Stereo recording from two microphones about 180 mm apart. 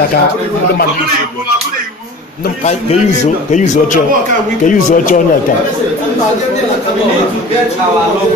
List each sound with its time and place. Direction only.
3.5 s speech: 45° left (ahead or behind)